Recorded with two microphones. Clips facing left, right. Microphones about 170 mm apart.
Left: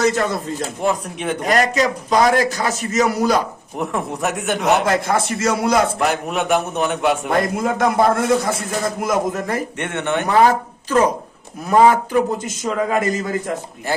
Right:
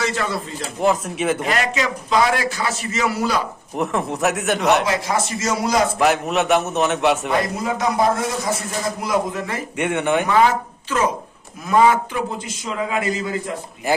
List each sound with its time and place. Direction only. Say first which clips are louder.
0.0 s a man's voice: left 5 dB; 45° left (ahead or behind)
0.8 s a man's voice: right 4 dB; centre (ahead or behind)
1.4 s a man's voice: left 4 dB; 40° left (ahead or behind)
3.8 s a man's voice: right 1 dB; centre (ahead or behind)
4.9 s speech: left 3 dB; 55° left (ahead or behind)
6.0 s a man's voice: right 2 dB; centre (ahead or behind)
7.3 s a man's voice: left 2 dB; 50° left (ahead or behind)
9.0 s a man's voice: left 1 dB; 45° left (ahead or behind)
9.7 s speech: right 2 dB; 10° right (ahead or behind)
10.3 s a man's voice: left 2 dB; 40° left (ahead or behind)